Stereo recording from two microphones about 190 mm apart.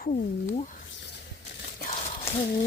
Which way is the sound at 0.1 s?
40° left (ahead or behind).